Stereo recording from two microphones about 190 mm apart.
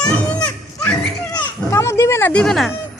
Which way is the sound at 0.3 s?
20° left (ahead or behind).